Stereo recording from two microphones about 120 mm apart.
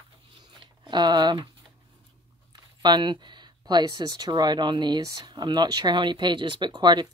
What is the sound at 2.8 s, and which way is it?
Speech, 40° right (ahead or behind).